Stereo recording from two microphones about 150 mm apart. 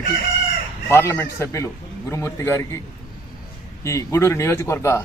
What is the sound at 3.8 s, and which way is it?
Speech, 20° left (ahead or behind).